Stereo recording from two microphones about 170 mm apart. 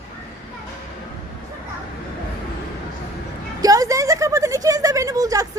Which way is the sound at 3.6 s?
20° right (ahead or behind).